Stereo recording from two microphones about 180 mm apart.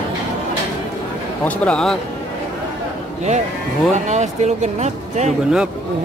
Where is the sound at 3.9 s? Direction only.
40° right (ahead or behind).